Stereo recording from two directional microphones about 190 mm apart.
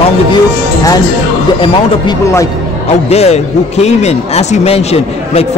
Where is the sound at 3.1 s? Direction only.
35° left (ahead or behind).